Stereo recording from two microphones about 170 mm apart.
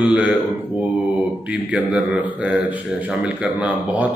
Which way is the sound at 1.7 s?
5° right (ahead or behind).